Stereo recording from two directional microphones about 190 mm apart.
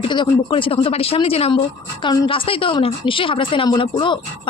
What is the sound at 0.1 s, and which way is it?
A woman's voice, 25° left (ahead or behind).